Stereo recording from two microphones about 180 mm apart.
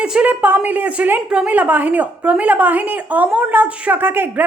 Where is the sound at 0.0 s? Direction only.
5° right (ahead or behind).